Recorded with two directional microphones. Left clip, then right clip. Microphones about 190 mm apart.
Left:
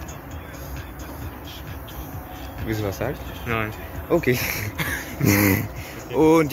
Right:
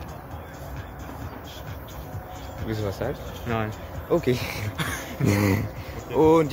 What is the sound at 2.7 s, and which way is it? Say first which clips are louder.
Speech: left 3 dB; 10° left (ahead or behind).